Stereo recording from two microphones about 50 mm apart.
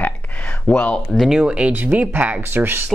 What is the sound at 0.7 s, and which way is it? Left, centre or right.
Speech, centre.